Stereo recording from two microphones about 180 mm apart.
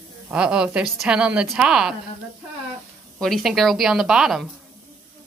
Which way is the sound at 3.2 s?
Centre (ahead or behind).